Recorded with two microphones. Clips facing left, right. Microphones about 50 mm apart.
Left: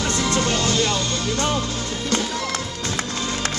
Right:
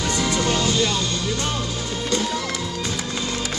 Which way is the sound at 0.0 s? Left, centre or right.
Centre.